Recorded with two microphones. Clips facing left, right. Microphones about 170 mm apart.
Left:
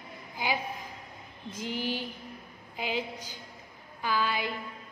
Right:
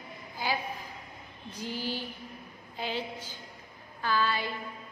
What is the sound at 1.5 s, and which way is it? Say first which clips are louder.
Speech: left 2 dB; 20° left (ahead or behind).